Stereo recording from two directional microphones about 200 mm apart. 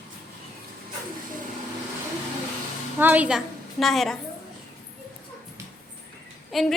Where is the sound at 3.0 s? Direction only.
10° right (ahead or behind).